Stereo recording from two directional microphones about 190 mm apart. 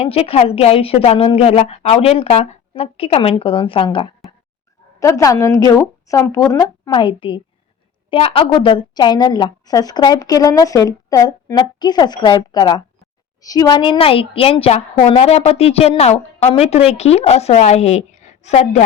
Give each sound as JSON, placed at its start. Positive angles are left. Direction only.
{"t": 0.0, "sound": "a woman's voice", "side_deg": 30}